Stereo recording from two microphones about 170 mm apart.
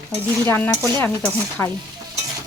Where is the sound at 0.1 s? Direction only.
10° left (ahead or behind).